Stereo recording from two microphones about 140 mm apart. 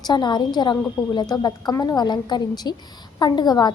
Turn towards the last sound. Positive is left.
turn(degrees=30)  # may be behind; listen again after turning